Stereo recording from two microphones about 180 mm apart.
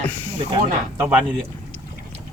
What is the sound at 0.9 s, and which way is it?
Speech, 15° right (ahead or behind).